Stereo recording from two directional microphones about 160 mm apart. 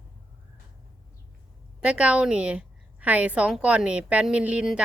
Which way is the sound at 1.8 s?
5° right (ahead or behind).